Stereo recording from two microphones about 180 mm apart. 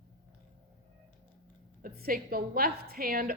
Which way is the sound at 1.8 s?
55° right (ahead or behind).